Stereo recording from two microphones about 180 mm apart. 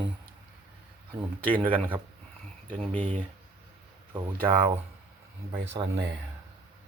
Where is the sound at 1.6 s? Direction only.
10° right (ahead or behind).